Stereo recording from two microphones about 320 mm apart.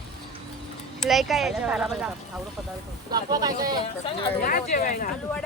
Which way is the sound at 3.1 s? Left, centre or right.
Centre.